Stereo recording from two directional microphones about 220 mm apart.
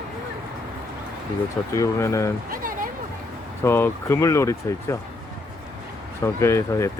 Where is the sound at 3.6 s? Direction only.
10° left (ahead or behind).